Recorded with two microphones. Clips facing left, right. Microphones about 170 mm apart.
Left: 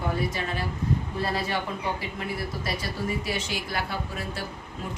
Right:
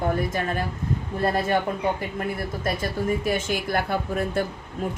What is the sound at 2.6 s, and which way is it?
Speech, 50° right (ahead or behind).